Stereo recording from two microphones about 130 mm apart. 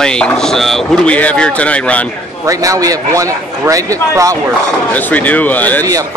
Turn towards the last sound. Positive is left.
turn(degrees=15)  # may be behind; listen again after turning